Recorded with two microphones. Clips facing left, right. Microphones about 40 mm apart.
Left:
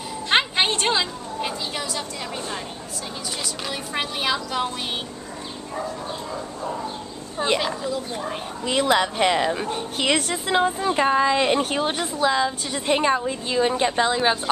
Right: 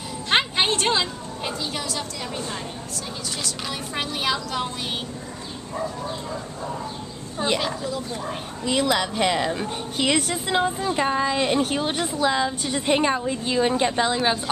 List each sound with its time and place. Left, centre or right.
0.3 s a woman's voice: centre
3.4 s a woman's voice: centre
7.3 s a woman's voice: centre
10.8 s a woman's voice: left
11.7 s a woman's voice: centre